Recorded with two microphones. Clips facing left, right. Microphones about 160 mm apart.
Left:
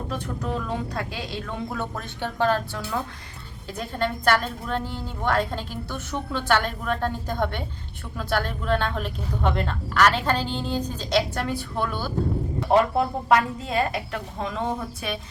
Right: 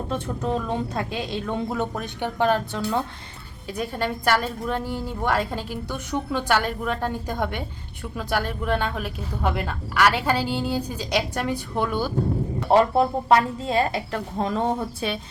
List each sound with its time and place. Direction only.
0.1 s a woman's voice: 25° right (ahead or behind)
12.7 s a woman's voice: 30° right (ahead or behind)